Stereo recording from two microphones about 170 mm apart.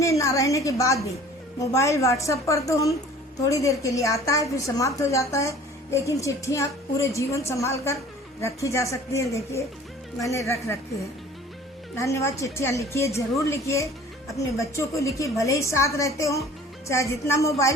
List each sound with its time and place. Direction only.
0.0 s a woman's voice: 20° left (ahead or behind)
11.9 s a woman's voice: 15° left (ahead or behind)